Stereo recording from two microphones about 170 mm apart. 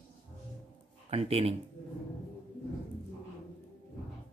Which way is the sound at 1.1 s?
35° right (ahead or behind).